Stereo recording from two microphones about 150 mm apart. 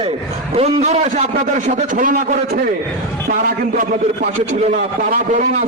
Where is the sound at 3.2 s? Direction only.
70° right (ahead or behind).